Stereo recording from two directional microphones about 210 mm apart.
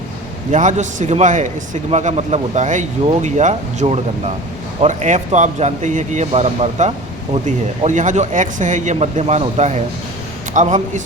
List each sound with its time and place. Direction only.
0.5 s a man's voice: 35° right (ahead or behind)